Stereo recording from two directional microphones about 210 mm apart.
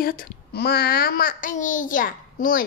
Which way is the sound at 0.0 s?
45° left (ahead or behind).